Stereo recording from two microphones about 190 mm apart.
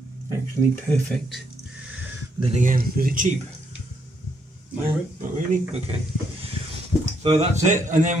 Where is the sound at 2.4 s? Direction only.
40° right (ahead or behind).